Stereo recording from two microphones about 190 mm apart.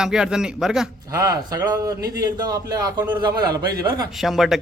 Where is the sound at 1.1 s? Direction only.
15° right (ahead or behind).